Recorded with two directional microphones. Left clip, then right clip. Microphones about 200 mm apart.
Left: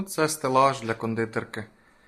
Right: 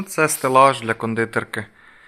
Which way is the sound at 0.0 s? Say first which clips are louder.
Right 6 dB; 30° right (ahead or behind).